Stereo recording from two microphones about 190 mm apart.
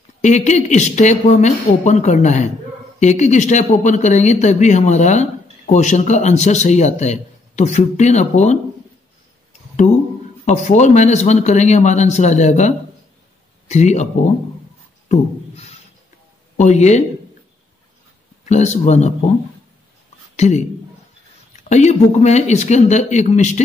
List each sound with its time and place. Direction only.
0.2 s speech: 40° left (ahead or behind)
10.4 s speech: 40° left (ahead or behind)
16.5 s speech: 35° left (ahead or behind)
18.4 s speech: 35° left (ahead or behind)
20.3 s a woman's voice: 35° left (ahead or behind)
21.6 s speech: 35° left (ahead or behind)